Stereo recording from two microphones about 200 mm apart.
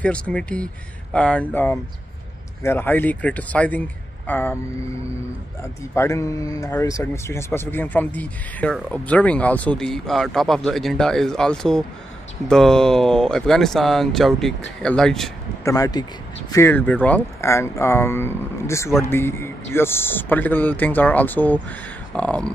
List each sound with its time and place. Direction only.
0.0 s speech: 5° left (ahead or behind)
5.6 s speech: 15° left (ahead or behind)
15.6 s speech: 20° left (ahead or behind)